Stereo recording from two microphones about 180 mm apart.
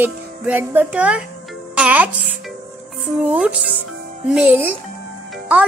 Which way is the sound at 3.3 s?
10° right (ahead or behind).